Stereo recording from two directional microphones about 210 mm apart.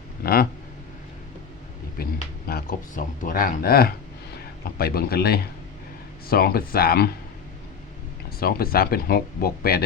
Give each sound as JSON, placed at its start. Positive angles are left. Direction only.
{"t": 0.2, "sound": "speech", "side_deg": 45}
{"t": 2.0, "sound": "a sound", "side_deg": 45}
{"t": 2.5, "sound": "speech", "side_deg": 45}
{"t": 8.4, "sound": "speech", "side_deg": 45}